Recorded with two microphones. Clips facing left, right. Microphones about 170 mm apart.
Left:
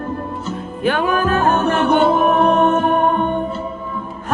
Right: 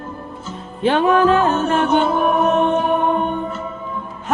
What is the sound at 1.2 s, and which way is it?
Music, 55° left (ahead or behind).